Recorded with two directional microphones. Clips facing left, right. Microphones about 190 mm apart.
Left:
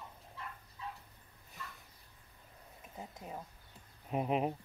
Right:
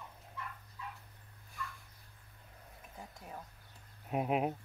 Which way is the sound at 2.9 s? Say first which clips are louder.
Left 3 dB; 20° left (ahead or behind).